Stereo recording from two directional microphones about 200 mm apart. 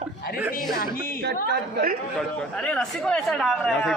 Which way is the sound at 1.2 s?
55° right (ahead or behind).